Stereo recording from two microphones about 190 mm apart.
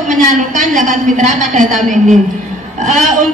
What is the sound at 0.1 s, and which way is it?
A woman's voice, 40° right (ahead or behind).